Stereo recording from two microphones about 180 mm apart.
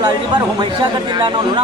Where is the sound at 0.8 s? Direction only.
25° right (ahead or behind).